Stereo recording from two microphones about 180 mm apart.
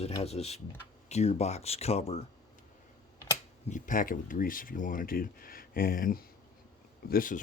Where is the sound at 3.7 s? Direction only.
45° left (ahead or behind).